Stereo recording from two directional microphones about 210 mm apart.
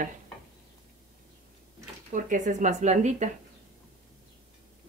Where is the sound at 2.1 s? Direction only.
35° right (ahead or behind).